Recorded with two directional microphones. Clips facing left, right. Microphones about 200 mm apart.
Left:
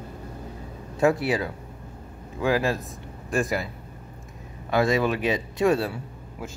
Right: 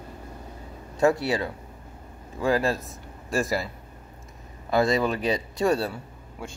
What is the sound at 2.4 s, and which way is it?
Speech, centre (ahead or behind).